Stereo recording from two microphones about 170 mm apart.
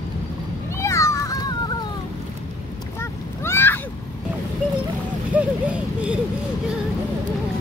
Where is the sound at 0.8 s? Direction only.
20° left (ahead or behind).